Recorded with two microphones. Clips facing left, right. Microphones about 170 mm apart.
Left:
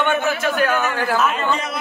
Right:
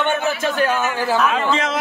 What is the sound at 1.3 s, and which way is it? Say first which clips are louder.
Speech: right 3 dB; 90° right.